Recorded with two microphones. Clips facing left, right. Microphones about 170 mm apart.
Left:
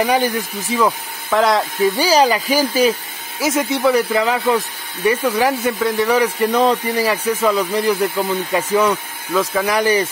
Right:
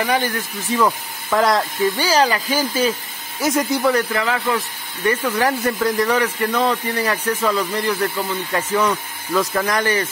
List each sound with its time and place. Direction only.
0.0 s speech: 10° left (ahead or behind)
2.0 s speech: 10° left (ahead or behind)
3.3 s speech: centre (ahead or behind)
4.1 s speech: 20° left (ahead or behind)